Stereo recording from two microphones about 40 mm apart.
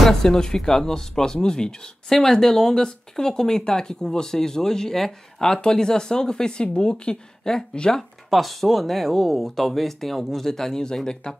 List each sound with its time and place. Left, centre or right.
0.0 s speech: centre
8.3 s speech: centre; by 11.4 s left